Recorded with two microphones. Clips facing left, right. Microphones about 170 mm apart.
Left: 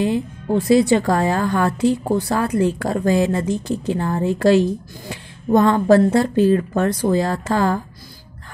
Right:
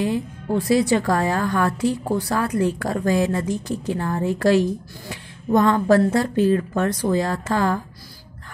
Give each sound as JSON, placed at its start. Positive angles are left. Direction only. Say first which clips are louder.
{"t": 0.0, "sound": "speech", "louder": "left 3 dB", "side_deg": 25}